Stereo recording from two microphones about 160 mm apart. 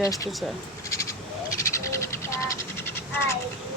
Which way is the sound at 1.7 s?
20° left (ahead or behind).